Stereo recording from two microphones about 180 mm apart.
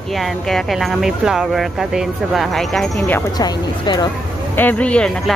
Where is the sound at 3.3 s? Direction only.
20° left (ahead or behind).